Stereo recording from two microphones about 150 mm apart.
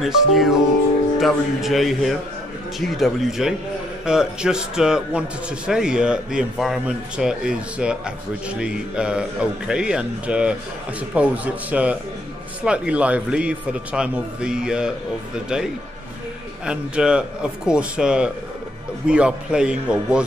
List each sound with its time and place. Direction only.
0.0 s a man's voice: centre (ahead or behind)
16.6 s a man's voice: 5° right (ahead or behind)